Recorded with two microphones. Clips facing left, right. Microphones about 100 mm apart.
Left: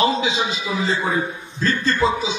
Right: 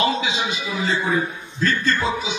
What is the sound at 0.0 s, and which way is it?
A man's voice, 25° left (ahead or behind).